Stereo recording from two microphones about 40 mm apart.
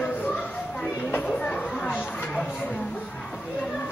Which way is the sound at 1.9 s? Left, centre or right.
Left.